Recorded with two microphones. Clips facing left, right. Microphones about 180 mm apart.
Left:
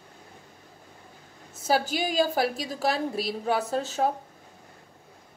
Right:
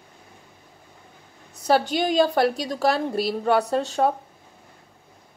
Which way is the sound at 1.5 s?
5° left (ahead or behind).